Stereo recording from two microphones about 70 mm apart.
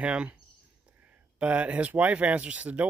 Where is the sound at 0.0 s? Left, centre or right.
Centre.